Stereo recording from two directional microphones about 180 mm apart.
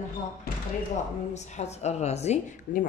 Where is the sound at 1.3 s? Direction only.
40° left (ahead or behind).